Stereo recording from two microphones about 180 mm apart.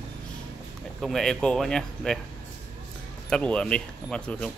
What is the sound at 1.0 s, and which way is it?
Speech, centre (ahead or behind).